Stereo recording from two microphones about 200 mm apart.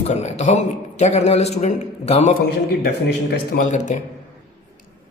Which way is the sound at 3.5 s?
40° left (ahead or behind).